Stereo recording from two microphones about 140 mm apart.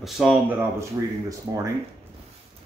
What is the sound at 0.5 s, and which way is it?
Speech, 15° right (ahead or behind).